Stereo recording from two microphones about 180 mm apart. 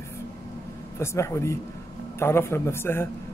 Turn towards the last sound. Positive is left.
turn(degrees=15)  # may be behind; listen again after turning